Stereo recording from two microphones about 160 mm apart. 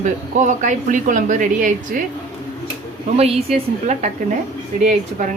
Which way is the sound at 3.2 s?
40° right (ahead or behind).